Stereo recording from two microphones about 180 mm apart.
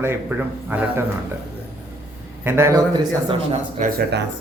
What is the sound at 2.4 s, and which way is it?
Speech, 15° right (ahead or behind).